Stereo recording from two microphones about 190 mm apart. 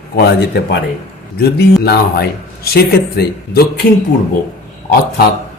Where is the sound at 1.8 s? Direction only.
55° left (ahead or behind).